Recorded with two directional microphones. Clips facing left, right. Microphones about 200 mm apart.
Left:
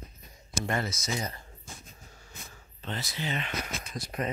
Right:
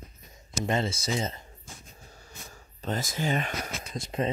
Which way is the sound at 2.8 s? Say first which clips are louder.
Right 5 dB; 45° right (ahead or behind).